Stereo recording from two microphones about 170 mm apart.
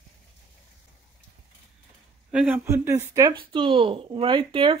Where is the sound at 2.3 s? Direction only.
10° right (ahead or behind); by 4.7 s 30° right (ahead or behind).